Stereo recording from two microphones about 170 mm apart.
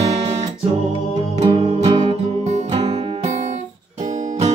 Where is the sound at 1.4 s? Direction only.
30° right (ahead or behind).